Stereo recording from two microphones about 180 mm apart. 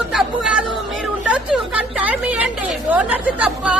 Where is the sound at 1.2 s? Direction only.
5° right (ahead or behind).